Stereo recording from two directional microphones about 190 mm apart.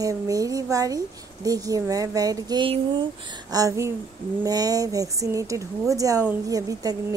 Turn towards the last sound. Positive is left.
turn(degrees=-20)  # may be behind; listen again after turning